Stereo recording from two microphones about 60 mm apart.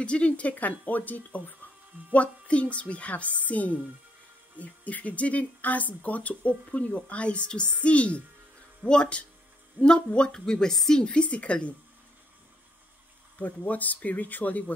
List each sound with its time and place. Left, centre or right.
0.0 s a woman's voice: centre
13.4 s speech: left